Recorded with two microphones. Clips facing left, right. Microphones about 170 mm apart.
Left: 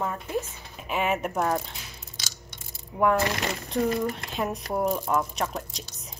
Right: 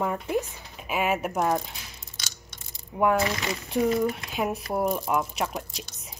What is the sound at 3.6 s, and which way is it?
A woman's voice, 5° right (ahead or behind).